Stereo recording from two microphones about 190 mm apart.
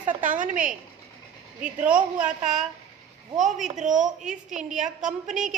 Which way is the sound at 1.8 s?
5° right (ahead or behind).